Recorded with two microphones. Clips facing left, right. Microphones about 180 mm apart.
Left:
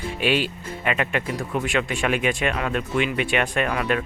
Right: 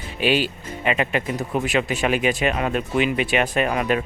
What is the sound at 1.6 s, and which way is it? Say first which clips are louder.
Speech: right 2 dB; centre (ahead or behind).